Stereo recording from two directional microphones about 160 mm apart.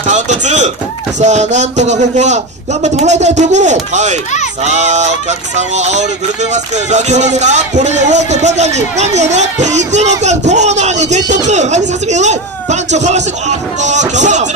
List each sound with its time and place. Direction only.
0.0 s music: 50° right (ahead or behind)